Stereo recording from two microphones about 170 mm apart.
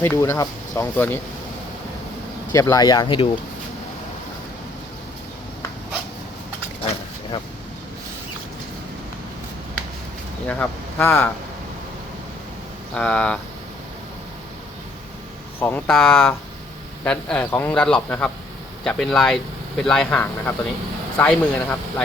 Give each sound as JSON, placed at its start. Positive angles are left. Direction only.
{"t": 0.0, "sound": "a man's voice", "side_deg": 15}
{"t": 2.5, "sound": "speech", "side_deg": 20}
{"t": 10.4, "sound": "speech", "side_deg": 10}
{"t": 12.9, "sound": "a man's voice", "side_deg": 5}
{"t": 15.6, "sound": "a man's voice", "side_deg": 10}